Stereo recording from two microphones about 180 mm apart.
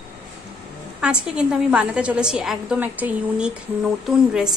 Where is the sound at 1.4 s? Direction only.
5° right (ahead or behind).